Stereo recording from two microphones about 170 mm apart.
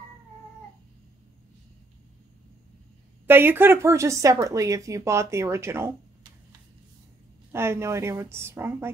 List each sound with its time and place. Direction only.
3.3 s speech: 10° right (ahead or behind)
7.5 s speech: 15° right (ahead or behind)